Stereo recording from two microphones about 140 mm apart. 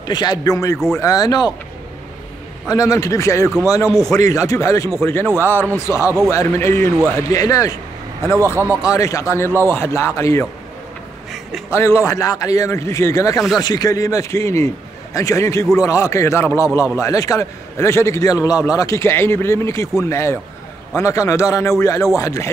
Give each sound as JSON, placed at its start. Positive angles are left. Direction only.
{"t": 0.0, "sound": "a man's voice", "side_deg": 30}
{"t": 2.7, "sound": "a man's voice", "side_deg": 25}
{"t": 8.4, "sound": "speech", "side_deg": -20}
{"t": 8.8, "sound": "a man's voice", "side_deg": 25}
{"t": 11.7, "sound": "a man's voice", "side_deg": 20}